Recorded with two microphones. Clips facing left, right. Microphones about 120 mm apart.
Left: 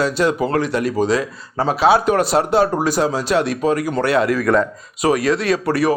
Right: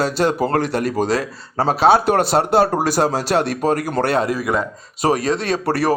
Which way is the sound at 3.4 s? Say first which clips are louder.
Left 1 dB; 50° right (ahead or behind).